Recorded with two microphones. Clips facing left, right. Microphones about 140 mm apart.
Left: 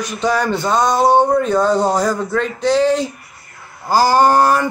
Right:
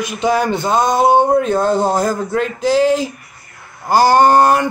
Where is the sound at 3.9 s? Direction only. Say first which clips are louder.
Right 2 dB; 60° right (ahead or behind).